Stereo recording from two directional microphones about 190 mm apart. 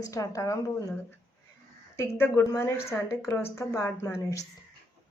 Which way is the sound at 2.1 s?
15° left (ahead or behind).